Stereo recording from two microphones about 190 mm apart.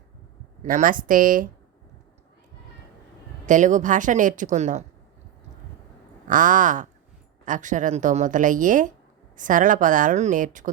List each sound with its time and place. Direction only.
0.6 s a woman's voice: 45° right (ahead or behind)
3.4 s speech: 40° right (ahead or behind)
6.2 s a woman's voice: 45° right (ahead or behind)